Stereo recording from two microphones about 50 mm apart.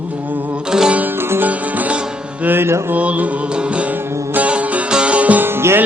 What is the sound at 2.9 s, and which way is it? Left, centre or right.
Music, right.